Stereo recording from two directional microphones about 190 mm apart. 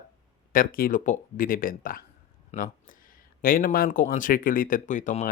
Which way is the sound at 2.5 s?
45° left (ahead or behind).